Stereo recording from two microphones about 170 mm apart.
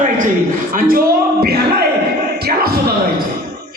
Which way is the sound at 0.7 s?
55° right (ahead or behind).